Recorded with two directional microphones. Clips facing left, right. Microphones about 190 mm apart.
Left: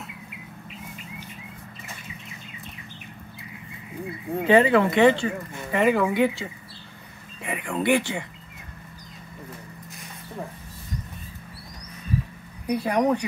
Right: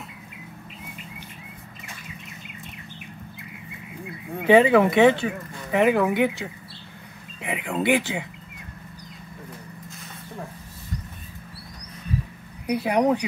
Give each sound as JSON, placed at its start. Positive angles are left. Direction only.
{"t": 4.5, "sound": "speech", "side_deg": -10}
{"t": 12.6, "sound": "speech", "side_deg": -10}